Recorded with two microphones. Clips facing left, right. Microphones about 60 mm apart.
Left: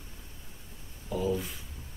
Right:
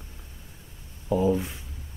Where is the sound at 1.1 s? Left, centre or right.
Right.